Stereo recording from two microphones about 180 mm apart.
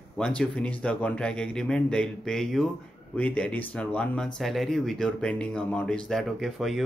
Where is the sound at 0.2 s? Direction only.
5° left (ahead or behind).